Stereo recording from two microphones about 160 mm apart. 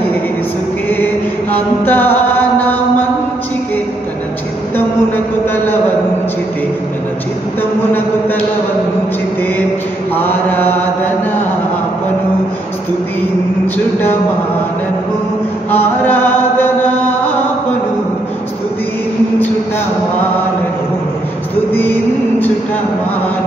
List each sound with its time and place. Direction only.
0.8 s chant: 10° left (ahead or behind)
10.1 s mantra: 10° left (ahead or behind)
15.7 s chant: 10° left (ahead or behind)